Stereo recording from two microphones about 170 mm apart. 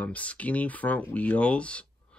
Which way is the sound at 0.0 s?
10° left (ahead or behind).